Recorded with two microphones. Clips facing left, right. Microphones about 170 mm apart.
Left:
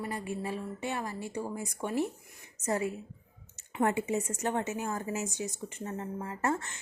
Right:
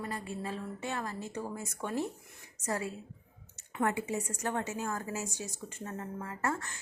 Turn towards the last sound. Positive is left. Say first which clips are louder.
# left 3 dB
turn(degrees=25)  # may be behind; listen again after turning